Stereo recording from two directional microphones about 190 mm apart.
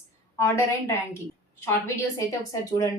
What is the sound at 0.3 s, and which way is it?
Speech, 15° left (ahead or behind).